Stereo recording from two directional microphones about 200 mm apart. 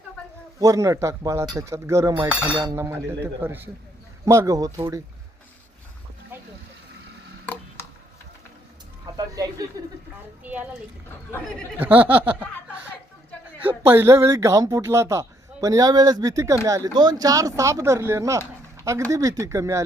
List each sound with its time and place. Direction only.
0.6 s speech: 15° right (ahead or behind)
6.3 s a sound: 10° right (ahead or behind)
7.4 s tick-tock: 10° left (ahead or behind)
9.1 s speech: 20° right (ahead or behind)
11.3 s speech: 5° left (ahead or behind)
11.8 s speech: 10° right (ahead or behind)
13.6 s speech: 10° right (ahead or behind)